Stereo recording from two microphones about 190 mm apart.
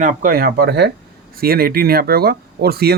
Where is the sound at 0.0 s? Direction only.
45° right (ahead or behind).